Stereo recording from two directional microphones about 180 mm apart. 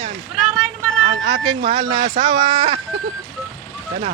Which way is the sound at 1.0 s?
30° right (ahead or behind).